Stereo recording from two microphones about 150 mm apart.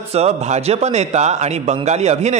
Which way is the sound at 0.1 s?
45° right (ahead or behind).